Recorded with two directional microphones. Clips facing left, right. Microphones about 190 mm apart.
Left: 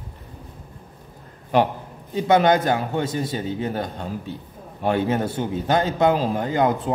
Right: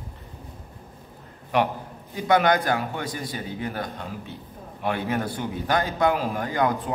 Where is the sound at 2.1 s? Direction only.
25° left (ahead or behind).